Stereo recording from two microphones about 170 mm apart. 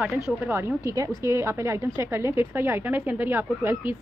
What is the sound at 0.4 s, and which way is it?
Speech, 15° right (ahead or behind).